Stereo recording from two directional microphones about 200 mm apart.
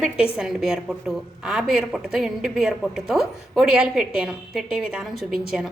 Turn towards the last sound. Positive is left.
turn(degrees=0)  # may be behind; listen again after turning